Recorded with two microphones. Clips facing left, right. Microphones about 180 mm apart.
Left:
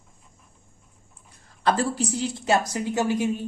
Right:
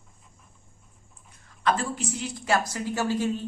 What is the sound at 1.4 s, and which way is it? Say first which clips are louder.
A woman's voice: left 3 dB; 35° left (ahead or behind).